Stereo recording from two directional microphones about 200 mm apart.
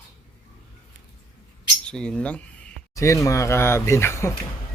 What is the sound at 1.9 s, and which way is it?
Speech, 5° left (ahead or behind).